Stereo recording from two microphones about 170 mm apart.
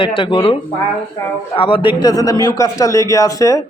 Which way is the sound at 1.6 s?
30° left (ahead or behind).